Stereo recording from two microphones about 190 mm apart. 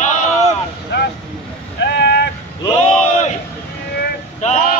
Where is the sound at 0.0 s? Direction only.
40° left (ahead or behind).